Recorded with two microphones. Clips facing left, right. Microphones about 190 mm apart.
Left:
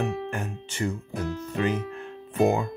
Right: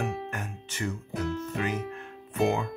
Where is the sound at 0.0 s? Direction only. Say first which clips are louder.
Left 4 dB; 30° left (ahead or behind).